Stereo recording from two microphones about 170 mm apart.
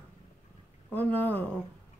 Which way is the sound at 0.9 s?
10° left (ahead or behind).